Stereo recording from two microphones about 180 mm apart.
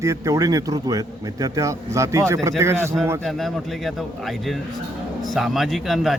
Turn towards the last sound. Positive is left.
turn(degrees=0)  # may be behind; listen again after turning